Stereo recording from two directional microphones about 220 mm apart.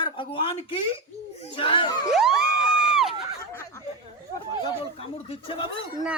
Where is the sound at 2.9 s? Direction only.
Centre (ahead or behind).